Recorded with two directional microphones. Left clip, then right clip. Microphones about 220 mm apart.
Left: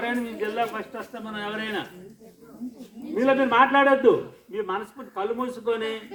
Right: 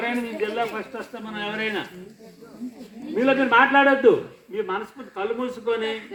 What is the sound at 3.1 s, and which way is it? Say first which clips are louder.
A woman's voice: right 2 dB; 15° right (ahead or behind).